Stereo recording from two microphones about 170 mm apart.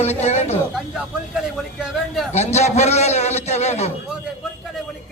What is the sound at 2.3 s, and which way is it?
A man's voice, 40° left (ahead or behind).